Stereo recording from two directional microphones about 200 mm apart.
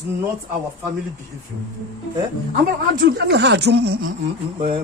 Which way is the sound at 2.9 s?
55° right (ahead or behind).